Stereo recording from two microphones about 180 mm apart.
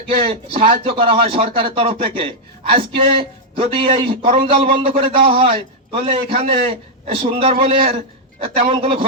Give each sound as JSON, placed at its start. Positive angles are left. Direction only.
{"t": 0.3, "sound": "speech", "side_deg": -30}